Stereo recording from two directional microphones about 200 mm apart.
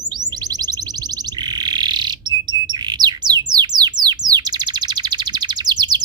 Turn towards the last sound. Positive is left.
turn(degrees=-20)  # may be behind; listen again after turning